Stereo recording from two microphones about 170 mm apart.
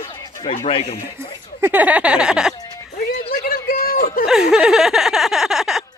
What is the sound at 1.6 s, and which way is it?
Speech, 10° right (ahead or behind).